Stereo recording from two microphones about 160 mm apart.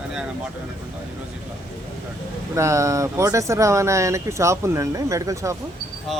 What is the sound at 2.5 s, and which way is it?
Speech, 20° right (ahead or behind).